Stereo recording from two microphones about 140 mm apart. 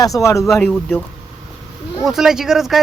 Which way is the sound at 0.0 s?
25° left (ahead or behind).